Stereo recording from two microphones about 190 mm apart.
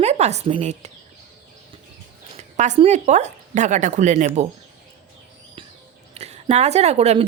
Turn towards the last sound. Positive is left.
turn(degrees=-35)  # may be behind; listen again after turning